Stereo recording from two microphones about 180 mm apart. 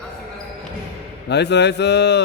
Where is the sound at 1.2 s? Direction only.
70° left (ahead or behind).